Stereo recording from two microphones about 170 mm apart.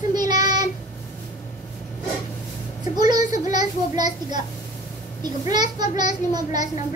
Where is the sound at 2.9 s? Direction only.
25° right (ahead or behind).